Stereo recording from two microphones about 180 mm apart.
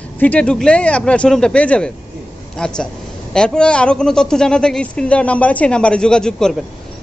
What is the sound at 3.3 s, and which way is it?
A man's voice, 5° left (ahead or behind).